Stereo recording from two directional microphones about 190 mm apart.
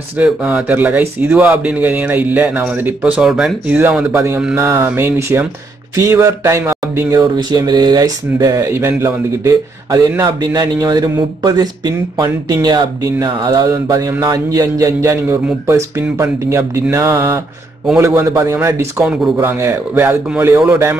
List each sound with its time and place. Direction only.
0.2 s speech: 5° right (ahead or behind)